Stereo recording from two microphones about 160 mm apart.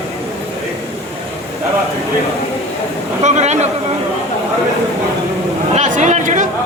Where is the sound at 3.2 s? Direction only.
45° right (ahead or behind).